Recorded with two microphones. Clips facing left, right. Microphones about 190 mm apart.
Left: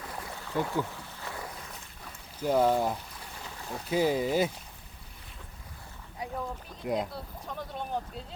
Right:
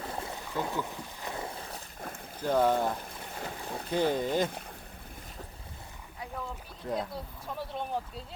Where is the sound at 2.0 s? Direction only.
50° right (ahead or behind).